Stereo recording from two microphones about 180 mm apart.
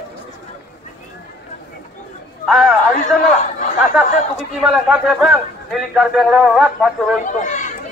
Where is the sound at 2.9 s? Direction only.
40° left (ahead or behind).